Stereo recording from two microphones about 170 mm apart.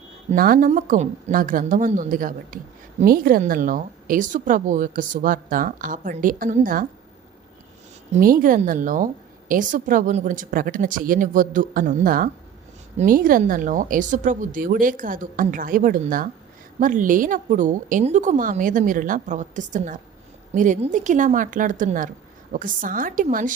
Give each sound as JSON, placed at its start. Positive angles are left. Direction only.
{"t": 0.3, "sound": "a woman's voice", "side_deg": -55}
{"t": 8.1, "sound": "a woman's voice", "side_deg": -55}